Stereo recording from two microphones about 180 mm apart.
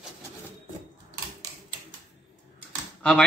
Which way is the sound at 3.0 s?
5° left (ahead or behind).